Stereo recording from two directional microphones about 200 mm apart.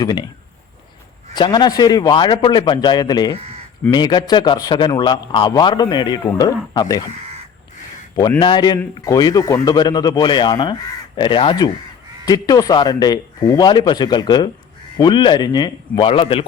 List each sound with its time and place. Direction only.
0.0 s speech: 20° left (ahead or behind)
1.3 s speech: 20° left (ahead or behind)
8.1 s speech: 20° left (ahead or behind)